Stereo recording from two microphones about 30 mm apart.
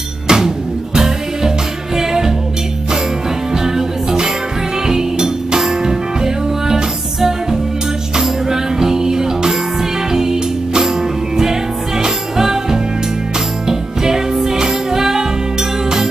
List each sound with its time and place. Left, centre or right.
0.3 s music: right
3.5 s music: centre